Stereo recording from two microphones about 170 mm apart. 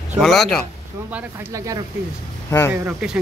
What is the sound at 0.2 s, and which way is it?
Speech, centre (ahead or behind).